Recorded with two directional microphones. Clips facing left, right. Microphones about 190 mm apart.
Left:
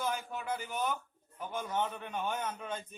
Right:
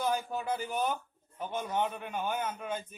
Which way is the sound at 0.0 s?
35° right (ahead or behind).